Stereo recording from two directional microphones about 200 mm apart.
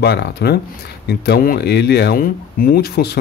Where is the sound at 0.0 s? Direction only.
55° left (ahead or behind).